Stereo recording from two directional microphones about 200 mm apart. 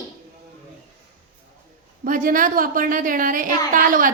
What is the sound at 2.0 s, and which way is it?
A woman's voice, 40° right (ahead or behind).